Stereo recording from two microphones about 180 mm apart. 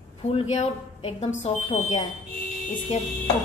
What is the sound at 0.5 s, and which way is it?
Speech, 35° left (ahead or behind).